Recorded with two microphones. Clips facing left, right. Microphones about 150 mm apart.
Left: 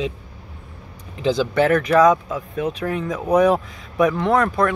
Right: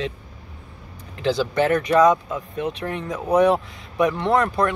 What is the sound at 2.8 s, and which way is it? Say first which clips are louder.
Speech: left 4 dB; 30° right (ahead or behind).